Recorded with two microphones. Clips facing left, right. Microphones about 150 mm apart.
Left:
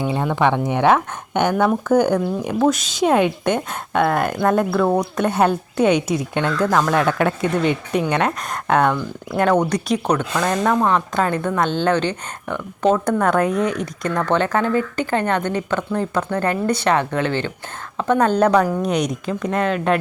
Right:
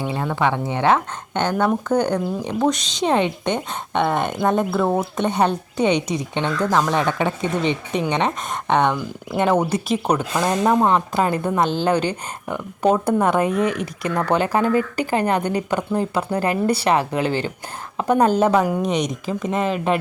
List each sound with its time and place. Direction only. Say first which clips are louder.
0.0 s speech: left 3 dB; 10° left (ahead or behind); by 10.2 s 5° right (ahead or behind)
10.3 s speech: right 2 dB; 20° right (ahead or behind)
11.1 s speech: even; 10° right (ahead or behind)
17.2 s speech: even; 35° right (ahead or behind)
17.9 s speech: even; 10° right (ahead or behind)